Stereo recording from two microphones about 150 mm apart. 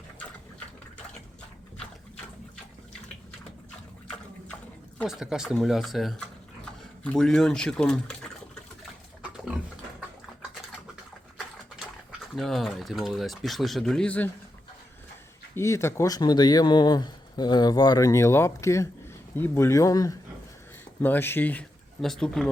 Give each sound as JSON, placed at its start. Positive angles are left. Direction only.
{"t": 5.0, "sound": "speech", "side_deg": -5}
{"t": 12.4, "sound": "speech", "side_deg": 0}
{"t": 15.5, "sound": "speech", "side_deg": 20}
{"t": 21.0, "sound": "speech", "side_deg": 15}